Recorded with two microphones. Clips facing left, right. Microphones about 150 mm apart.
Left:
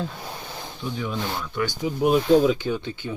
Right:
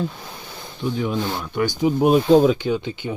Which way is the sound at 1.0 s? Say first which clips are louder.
Right 5 dB; 20° right (ahead or behind).